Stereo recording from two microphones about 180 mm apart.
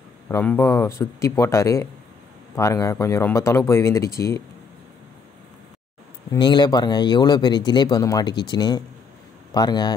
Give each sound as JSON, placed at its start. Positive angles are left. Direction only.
{"t": 0.3, "sound": "speech", "side_deg": 15}
{"t": 6.3, "sound": "a man's voice", "side_deg": 25}